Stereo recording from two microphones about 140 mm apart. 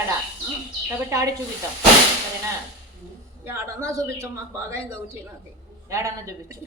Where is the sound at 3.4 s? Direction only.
20° right (ahead or behind).